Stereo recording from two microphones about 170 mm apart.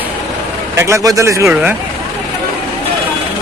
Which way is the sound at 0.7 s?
15° right (ahead or behind).